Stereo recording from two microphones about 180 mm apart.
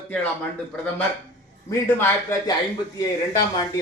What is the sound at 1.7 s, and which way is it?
Speech, 15° left (ahead or behind).